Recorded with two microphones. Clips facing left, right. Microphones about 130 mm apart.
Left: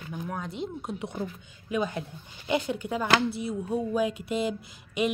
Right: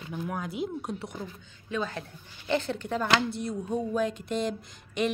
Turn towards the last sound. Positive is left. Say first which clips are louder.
# left 1 dB
turn(degrees=5)  # may be behind; listen again after turning